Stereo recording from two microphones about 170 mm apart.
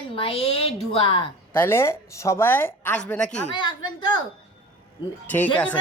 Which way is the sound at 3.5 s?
25° left (ahead or behind).